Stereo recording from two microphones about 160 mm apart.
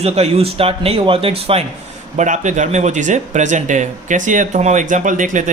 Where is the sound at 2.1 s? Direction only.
50° right (ahead or behind).